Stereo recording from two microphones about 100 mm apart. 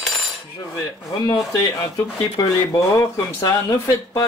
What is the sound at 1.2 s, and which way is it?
Speech, 40° left (ahead or behind).